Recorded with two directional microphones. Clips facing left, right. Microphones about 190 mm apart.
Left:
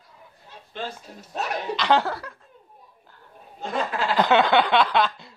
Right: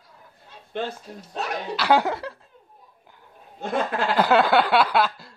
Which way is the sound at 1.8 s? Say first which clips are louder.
Right 2 dB; 10° right (ahead or behind).